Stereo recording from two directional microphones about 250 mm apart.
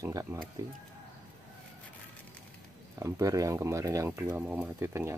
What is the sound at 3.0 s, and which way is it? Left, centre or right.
Speech, centre.